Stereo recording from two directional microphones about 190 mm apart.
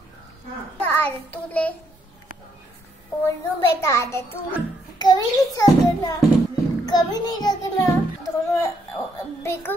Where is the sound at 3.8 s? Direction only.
15° left (ahead or behind).